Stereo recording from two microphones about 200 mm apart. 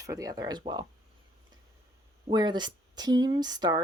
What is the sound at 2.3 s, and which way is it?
Speech, 20° right (ahead or behind).